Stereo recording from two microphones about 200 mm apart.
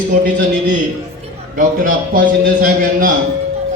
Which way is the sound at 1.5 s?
40° right (ahead or behind).